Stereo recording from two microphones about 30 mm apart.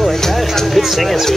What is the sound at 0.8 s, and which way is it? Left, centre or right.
Speech, centre.